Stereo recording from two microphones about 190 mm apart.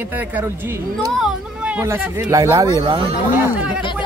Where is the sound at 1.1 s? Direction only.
Centre (ahead or behind); by 3.1 s 25° right (ahead or behind).